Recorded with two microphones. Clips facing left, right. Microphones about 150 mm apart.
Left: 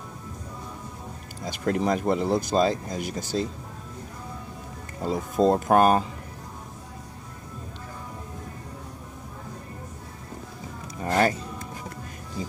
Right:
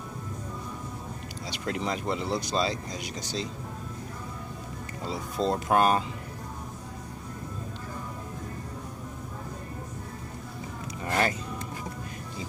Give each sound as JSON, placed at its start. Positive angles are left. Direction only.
{"t": 1.4, "sound": "speech", "side_deg": 50}
{"t": 5.0, "sound": "speech", "side_deg": 45}
{"t": 11.1, "sound": "music", "side_deg": 40}